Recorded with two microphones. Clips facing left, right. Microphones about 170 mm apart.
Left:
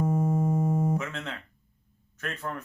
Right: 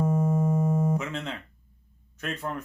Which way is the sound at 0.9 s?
15° right (ahead or behind).